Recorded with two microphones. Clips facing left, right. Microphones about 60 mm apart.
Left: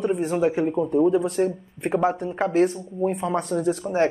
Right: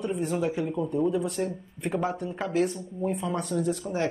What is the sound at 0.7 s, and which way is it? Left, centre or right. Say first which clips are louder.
Speech: left 6 dB; left.